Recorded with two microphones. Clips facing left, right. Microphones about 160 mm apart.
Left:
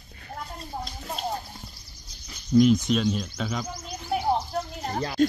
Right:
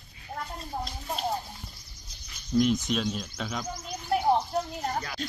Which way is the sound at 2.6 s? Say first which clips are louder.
Left 5 dB; centre (ahead or behind).